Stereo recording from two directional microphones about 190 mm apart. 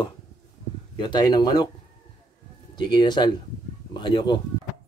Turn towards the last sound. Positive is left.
turn(degrees=25)  # may be behind; listen again after turning